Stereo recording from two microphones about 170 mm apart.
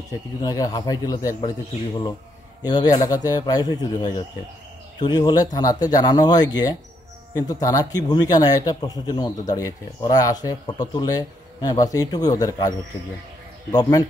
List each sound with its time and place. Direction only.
0.4 s speech: 20° left (ahead or behind)
2.6 s speech: 25° left (ahead or behind)